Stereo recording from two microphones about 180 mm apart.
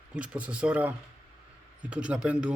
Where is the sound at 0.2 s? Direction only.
5° right (ahead or behind).